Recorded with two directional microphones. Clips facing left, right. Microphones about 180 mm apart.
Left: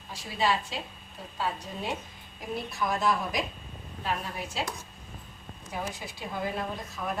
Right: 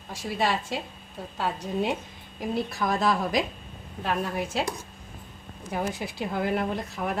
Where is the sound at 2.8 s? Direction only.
90° right.